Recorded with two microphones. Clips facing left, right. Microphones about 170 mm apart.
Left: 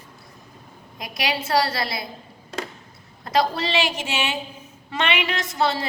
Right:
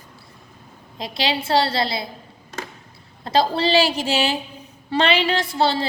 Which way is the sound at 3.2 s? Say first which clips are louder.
Right 3 dB; 30° right (ahead or behind).